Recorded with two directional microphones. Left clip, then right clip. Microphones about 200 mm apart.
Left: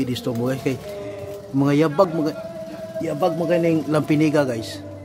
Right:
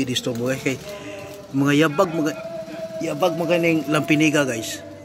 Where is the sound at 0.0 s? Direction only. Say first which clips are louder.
Right 1 dB; 5° left (ahead or behind).